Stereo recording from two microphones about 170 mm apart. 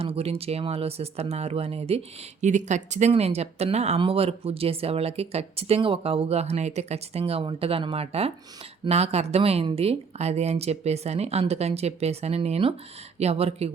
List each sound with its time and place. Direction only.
0.0 s speech: 35° right (ahead or behind)